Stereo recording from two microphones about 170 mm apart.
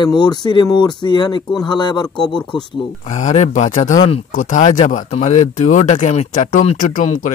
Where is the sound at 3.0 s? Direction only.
45° left (ahead or behind).